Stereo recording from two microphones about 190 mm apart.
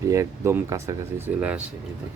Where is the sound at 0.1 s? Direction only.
15° right (ahead or behind).